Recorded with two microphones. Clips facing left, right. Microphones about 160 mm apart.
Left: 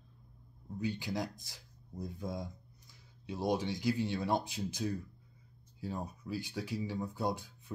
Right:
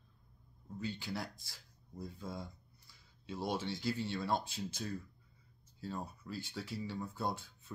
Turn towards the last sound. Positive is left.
turn(degrees=15)  # may be behind; listen again after turning